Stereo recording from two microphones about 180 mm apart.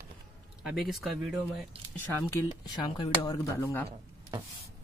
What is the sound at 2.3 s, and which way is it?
Speech, 25° left (ahead or behind).